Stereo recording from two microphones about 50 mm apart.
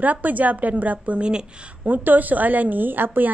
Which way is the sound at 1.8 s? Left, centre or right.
Right.